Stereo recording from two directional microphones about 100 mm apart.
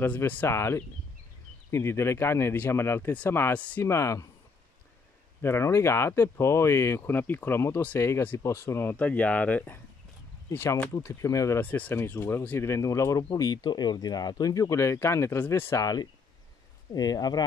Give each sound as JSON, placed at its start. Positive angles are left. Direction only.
{"t": 0.0, "sound": "speech", "side_deg": 20}
{"t": 3.8, "sound": "speech", "side_deg": 30}
{"t": 5.4, "sound": "speech", "side_deg": 25}
{"t": 8.9, "sound": "speech", "side_deg": 15}
{"t": 10.5, "sound": "speech", "side_deg": 25}
{"t": 11.6, "sound": "speech", "side_deg": 15}
{"t": 16.9, "sound": "speech", "side_deg": 40}